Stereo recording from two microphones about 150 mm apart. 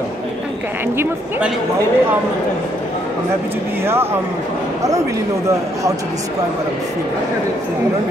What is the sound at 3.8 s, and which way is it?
Speech, 15° right (ahead or behind).